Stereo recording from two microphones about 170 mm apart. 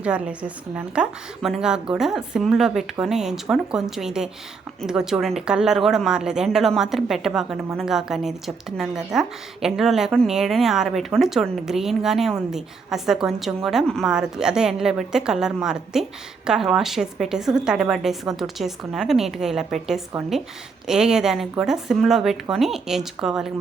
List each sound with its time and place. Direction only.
0.0 s speech: 5° right (ahead or behind)